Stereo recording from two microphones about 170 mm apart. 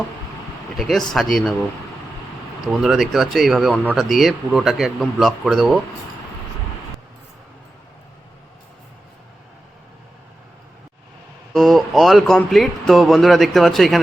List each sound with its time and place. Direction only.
0.8 s speech: centre (ahead or behind)
2.6 s speech: centre (ahead or behind)
11.5 s speech: centre (ahead or behind)